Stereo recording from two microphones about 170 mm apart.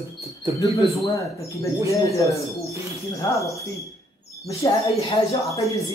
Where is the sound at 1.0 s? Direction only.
20° left (ahead or behind).